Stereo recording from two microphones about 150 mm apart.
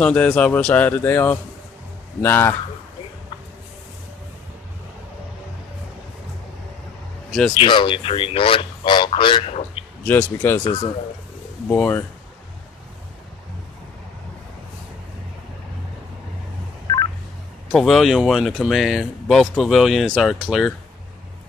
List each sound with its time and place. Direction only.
0.0 s a man's voice: 10° left (ahead or behind)
7.2 s speech: 5° left (ahead or behind)
7.5 s speech: 35° left (ahead or behind)
10.0 s a man's voice: 10° left (ahead or behind)
10.6 s speech: 40° left (ahead or behind)
11.7 s a man's voice: 10° left (ahead or behind)
16.8 s telephone dialing: 30° left (ahead or behind)
17.6 s speech: 5° left (ahead or behind)